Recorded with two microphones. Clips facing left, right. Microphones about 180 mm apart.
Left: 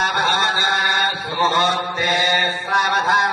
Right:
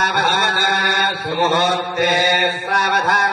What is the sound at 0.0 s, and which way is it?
Mantra, 65° right (ahead or behind).